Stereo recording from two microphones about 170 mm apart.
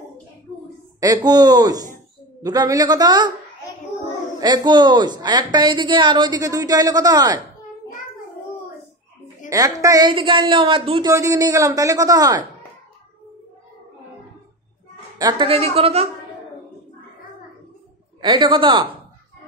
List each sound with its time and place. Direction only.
1.0 s a woman's voice: 25° right (ahead or behind)
4.4 s a woman's voice: 25° right (ahead or behind)
9.5 s a woman's voice: 20° right (ahead or behind)
15.1 s a woman's voice: 25° right (ahead or behind)
15.4 s a woman's voice: 35° right (ahead or behind)
18.2 s a woman's voice: 25° right (ahead or behind)